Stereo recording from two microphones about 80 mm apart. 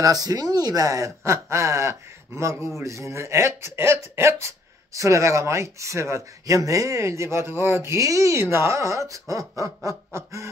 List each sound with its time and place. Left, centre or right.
0.0 s speech: right